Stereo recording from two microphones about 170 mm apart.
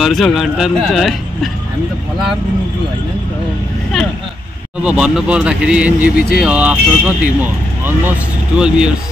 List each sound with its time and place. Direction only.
0.0 s speech: centre (ahead or behind)
4.8 s speech: 5° right (ahead or behind)
6.1 s speech: 65° left (ahead or behind)
6.4 s speech: 10° right (ahead or behind)
8.5 s speech: 5° right (ahead or behind)